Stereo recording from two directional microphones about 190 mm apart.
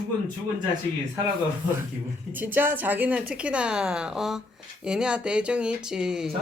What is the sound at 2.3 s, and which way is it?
A woman's voice, 10° right (ahead or behind).